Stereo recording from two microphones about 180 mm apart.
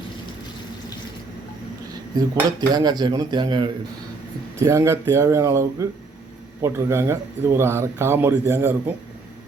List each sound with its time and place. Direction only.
2.1 s speech: 20° right (ahead or behind)